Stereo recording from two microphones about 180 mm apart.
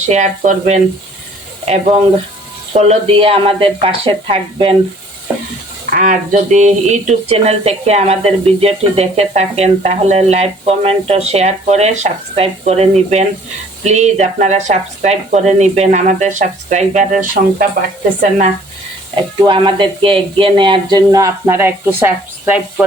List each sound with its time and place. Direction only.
0.0 s speech: 40° right (ahead or behind)
5.9 s speech: 45° right (ahead or behind)
19.5 s speech: 25° right (ahead or behind); by 22.6 s 10° right (ahead or behind)